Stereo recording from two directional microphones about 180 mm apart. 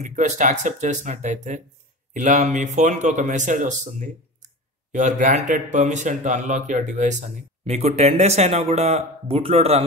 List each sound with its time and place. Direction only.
0.0 s speech: 40° right (ahead or behind)